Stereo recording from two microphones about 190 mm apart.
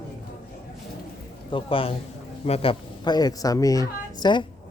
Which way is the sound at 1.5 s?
25° left (ahead or behind).